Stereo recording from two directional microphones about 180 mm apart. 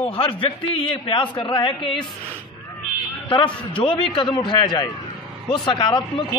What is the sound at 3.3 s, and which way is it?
A man's voice, 30° left (ahead or behind).